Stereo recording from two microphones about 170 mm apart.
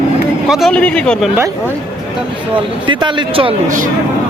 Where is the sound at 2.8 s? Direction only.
30° right (ahead or behind).